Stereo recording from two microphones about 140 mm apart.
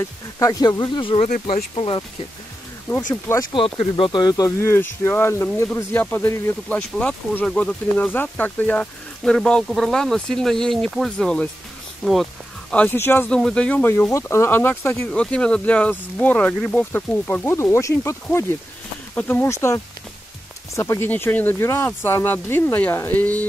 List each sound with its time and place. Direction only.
0.4 s speech: 25° left (ahead or behind)
1.2 s speech: 60° left (ahead or behind)
1.8 s speech: 40° left (ahead or behind)
3.1 s speech: 25° left (ahead or behind)
3.6 s speech: 40° left (ahead or behind); by 12.3 s centre (ahead or behind)
12.7 s speech: 15° left (ahead or behind)